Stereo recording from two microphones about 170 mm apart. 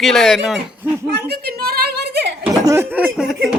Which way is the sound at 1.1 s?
70° right (ahead or behind).